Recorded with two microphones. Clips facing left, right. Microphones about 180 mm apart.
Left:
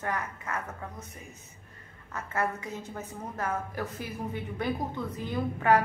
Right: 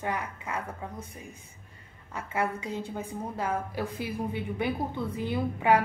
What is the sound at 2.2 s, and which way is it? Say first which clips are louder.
Speech: right 1 dB; 10° right (ahead or behind).